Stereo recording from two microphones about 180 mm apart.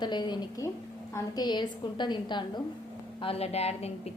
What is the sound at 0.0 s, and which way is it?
A woman's voice, 25° left (ahead or behind).